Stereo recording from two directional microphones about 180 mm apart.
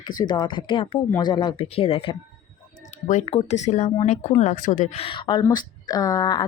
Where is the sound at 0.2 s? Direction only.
25° left (ahead or behind).